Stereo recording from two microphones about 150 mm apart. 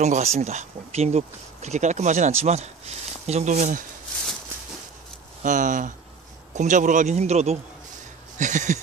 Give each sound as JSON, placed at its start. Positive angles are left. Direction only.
{"t": 0.0, "sound": "speech", "side_deg": -50}
{"t": 5.4, "sound": "speech", "side_deg": -60}